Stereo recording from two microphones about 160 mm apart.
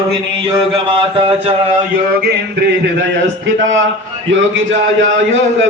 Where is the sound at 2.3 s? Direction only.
90° right.